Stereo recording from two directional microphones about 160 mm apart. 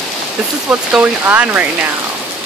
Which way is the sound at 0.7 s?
10° right (ahead or behind).